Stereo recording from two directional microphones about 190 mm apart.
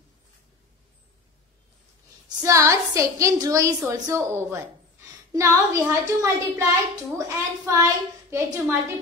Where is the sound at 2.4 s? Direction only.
15° right (ahead or behind).